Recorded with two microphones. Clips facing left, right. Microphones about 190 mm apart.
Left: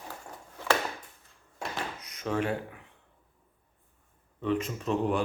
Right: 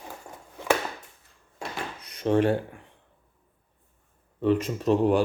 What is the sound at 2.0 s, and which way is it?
Dishes, 30° right (ahead or behind).